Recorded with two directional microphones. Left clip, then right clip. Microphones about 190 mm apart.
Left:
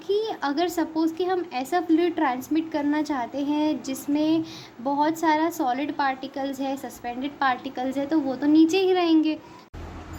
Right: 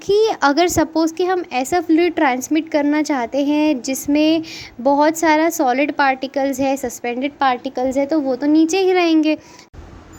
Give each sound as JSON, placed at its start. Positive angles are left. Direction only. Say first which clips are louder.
{"t": 0.1, "sound": "a woman's voice", "louder": "right 11 dB", "side_deg": -45}